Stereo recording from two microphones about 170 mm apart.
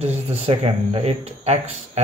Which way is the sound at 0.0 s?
35° right (ahead or behind).